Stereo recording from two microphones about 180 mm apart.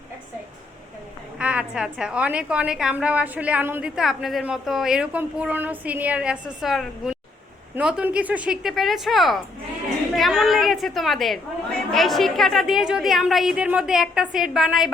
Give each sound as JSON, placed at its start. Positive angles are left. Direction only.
{"t": 1.4, "sound": "a woman's voice", "side_deg": -5}